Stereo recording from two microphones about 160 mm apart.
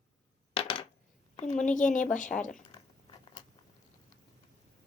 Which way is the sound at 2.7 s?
30° left (ahead or behind).